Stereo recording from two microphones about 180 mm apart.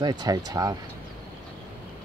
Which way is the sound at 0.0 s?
20° right (ahead or behind).